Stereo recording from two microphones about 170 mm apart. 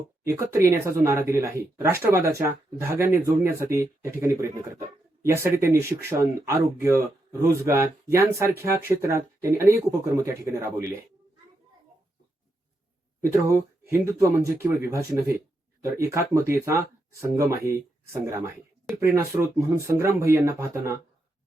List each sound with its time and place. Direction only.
0.3 s speech: 15° right (ahead or behind)
13.2 s speech: 15° right (ahead or behind)